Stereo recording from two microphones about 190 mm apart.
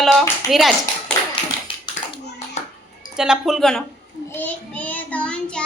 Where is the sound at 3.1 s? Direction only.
5° right (ahead or behind).